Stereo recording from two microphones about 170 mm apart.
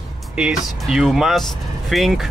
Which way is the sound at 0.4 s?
5° right (ahead or behind).